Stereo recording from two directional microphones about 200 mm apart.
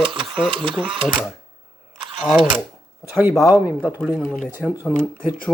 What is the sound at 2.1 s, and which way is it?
Speech, 5° right (ahead or behind).